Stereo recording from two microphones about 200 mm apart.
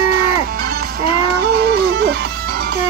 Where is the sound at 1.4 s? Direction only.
55° right (ahead or behind).